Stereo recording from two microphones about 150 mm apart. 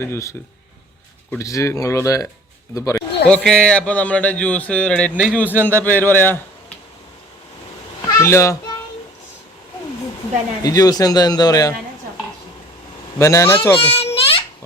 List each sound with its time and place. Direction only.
0.0 s a man's voice: 20° left (ahead or behind)
1.4 s a man's voice: 20° left (ahead or behind)
3.2 s speech: 5° left (ahead or behind)
5.2 s a man's voice: 10° right (ahead or behind)
5.5 s speech: 10° left (ahead or behind)
8.2 s a man's voice: 20° left (ahead or behind)
10.6 s a man's voice: 25° left (ahead or behind)
13.1 s speech: 20° left (ahead or behind)
13.7 s a sound: 40° left (ahead or behind)